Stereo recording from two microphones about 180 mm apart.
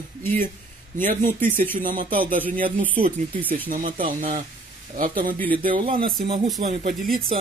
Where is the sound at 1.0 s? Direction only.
50° right (ahead or behind).